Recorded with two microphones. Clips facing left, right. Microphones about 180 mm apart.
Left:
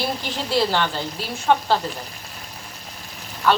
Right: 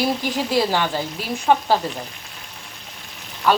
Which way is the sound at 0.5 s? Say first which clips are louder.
Left 1 dB; 10° right (ahead or behind).